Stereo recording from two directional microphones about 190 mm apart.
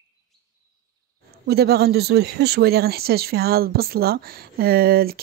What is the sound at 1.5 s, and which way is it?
Speech, 55° right (ahead or behind).